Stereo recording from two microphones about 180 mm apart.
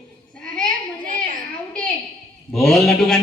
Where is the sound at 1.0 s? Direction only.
45° right (ahead or behind).